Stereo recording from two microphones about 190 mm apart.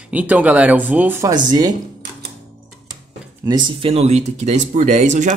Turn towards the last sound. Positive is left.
turn(degrees=-40)  # may be behind; listen again after turning